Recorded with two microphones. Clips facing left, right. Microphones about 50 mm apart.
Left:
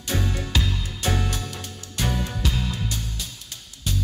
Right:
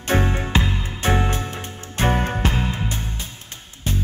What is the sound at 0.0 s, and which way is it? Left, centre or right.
Music, right.